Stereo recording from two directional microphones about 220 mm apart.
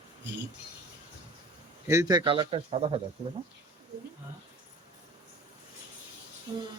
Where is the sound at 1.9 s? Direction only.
15° right (ahead or behind).